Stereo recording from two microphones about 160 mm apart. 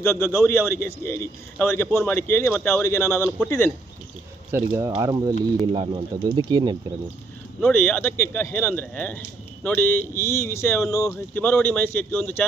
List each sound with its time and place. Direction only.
0.0 s speech: 20° left (ahead or behind)
4.5 s speech: 15° right (ahead or behind)
7.6 s speech: 10° left (ahead or behind)